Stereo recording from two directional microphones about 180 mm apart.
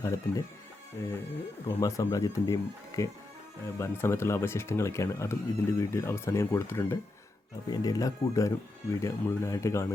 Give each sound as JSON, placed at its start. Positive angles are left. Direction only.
{"t": 0.0, "sound": "speech", "side_deg": 15}